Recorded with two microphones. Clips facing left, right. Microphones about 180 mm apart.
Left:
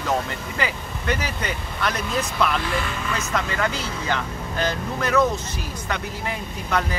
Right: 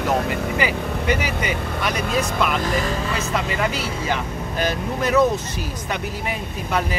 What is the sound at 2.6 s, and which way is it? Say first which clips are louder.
Speech: right 4 dB; 40° right (ahead or behind).